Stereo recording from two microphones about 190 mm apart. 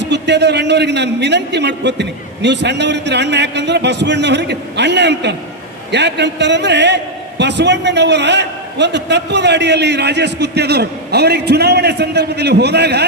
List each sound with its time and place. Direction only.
0.0 s a man's voice: 65° right (ahead or behind)